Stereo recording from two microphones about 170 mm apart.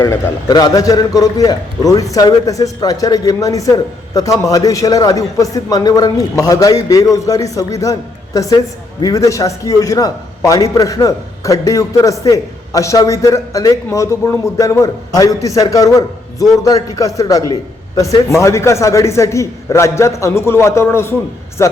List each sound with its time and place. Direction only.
0.0 s a man's voice: 20° left (ahead or behind)